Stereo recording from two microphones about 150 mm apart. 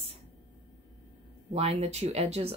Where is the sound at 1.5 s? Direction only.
45° right (ahead or behind).